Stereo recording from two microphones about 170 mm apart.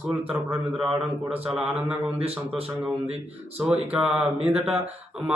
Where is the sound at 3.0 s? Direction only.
35° right (ahead or behind).